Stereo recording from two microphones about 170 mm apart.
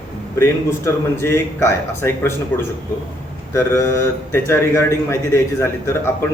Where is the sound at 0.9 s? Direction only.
15° left (ahead or behind).